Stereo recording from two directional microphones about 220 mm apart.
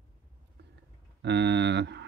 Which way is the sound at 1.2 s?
50° right (ahead or behind).